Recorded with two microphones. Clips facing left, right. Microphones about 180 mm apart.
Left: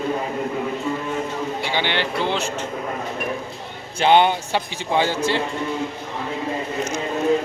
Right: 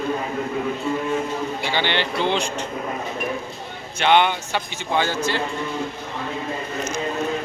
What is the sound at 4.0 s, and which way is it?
A man's voice, 35° left (ahead or behind).